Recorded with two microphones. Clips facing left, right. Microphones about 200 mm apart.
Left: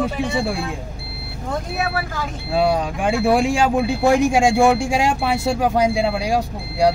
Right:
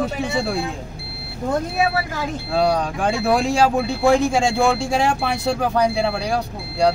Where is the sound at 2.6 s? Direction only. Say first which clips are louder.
Left 1 dB; 5° left (ahead or behind).